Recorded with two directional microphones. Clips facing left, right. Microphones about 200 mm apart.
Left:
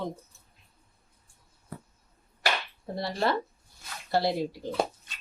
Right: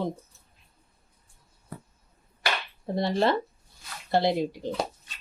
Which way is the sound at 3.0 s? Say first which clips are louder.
Right 4 dB; 20° right (ahead or behind).